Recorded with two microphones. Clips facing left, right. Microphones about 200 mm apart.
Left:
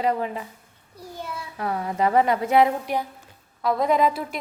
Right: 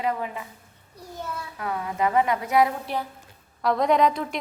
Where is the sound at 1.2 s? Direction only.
10° left (ahead or behind).